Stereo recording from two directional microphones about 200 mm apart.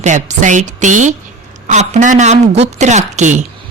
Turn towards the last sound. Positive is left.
turn(degrees=-35)  # may be behind; listen again after turning